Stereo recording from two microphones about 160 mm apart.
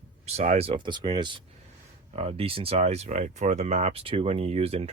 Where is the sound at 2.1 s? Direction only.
40° right (ahead or behind).